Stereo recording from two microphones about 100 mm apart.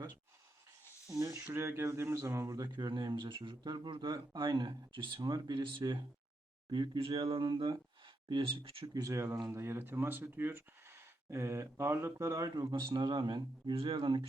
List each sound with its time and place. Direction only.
1.0 s speech: 30° right (ahead or behind)
2.7 s speech: 50° right (ahead or behind); by 8.9 s 65° right (ahead or behind)
8.9 s speech: 35° right (ahead or behind)
12.7 s speech: 45° right (ahead or behind)